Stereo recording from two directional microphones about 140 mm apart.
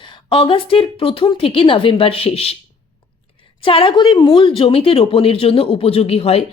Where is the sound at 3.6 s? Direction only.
40° left (ahead or behind).